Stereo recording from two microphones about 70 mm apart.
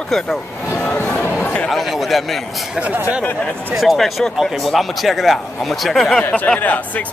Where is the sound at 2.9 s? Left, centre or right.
Right.